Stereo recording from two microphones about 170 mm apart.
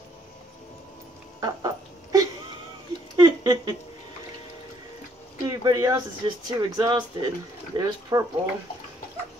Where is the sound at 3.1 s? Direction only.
25° right (ahead or behind).